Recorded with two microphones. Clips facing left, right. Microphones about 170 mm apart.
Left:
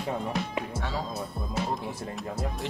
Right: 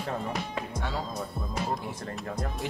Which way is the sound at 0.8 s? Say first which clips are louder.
Left 1 dB; centre (ahead or behind).